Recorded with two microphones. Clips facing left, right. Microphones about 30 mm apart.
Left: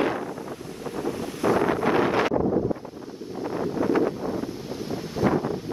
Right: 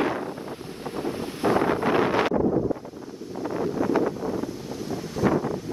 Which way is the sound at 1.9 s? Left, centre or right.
Left.